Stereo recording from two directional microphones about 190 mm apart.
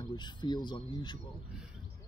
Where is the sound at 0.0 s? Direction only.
25° left (ahead or behind).